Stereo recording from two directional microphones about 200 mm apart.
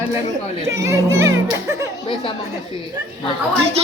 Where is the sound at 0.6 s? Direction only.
15° right (ahead or behind).